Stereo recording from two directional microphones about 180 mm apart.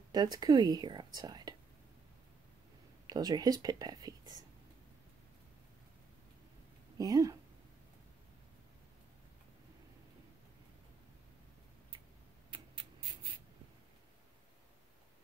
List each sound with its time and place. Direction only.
0.1 s speech: 20° right (ahead or behind)
3.1 s speech: 20° right (ahead or behind)
7.0 s speech: 20° right (ahead or behind)
12.4 s writing: 30° right (ahead or behind)